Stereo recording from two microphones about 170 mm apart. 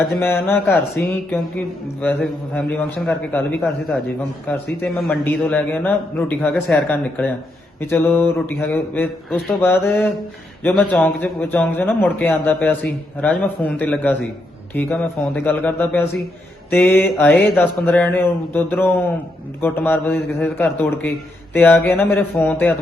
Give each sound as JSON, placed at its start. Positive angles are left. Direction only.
{"t": 0.1, "sound": "a man's voice", "side_deg": 15}
{"t": 4.4, "sound": "a man's voice", "side_deg": 10}